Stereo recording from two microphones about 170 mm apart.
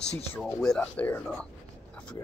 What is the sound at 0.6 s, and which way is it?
Speech, 5° left (ahead or behind).